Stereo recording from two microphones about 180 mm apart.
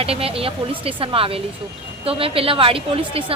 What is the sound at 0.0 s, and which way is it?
A woman's voice, 30° right (ahead or behind).